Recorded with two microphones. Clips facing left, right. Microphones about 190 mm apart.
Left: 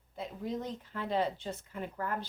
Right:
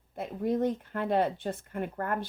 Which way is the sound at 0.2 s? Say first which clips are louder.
Right 9 dB; 55° right (ahead or behind).